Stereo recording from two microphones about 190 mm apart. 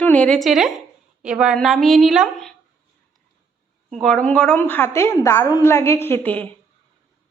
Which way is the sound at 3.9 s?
Centre (ahead or behind).